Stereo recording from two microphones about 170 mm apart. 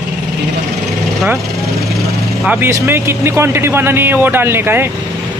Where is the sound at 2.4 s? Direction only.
10° right (ahead or behind).